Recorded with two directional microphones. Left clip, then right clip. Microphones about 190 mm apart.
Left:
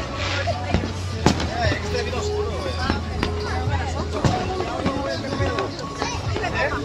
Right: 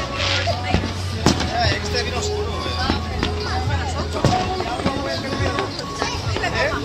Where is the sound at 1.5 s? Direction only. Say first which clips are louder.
Right 3 dB; 50° left (ahead or behind).